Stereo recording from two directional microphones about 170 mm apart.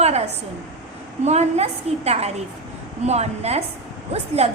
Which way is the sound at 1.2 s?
40° right (ahead or behind).